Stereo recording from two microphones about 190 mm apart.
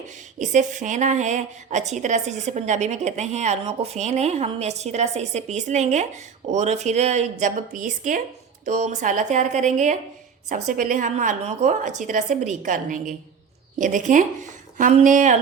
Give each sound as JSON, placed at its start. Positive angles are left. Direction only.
{"t": 0.3, "sound": "a woman's voice", "side_deg": -40}